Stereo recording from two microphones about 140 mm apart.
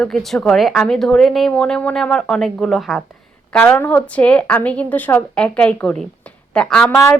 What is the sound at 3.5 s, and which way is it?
A woman's voice, 10° left (ahead or behind).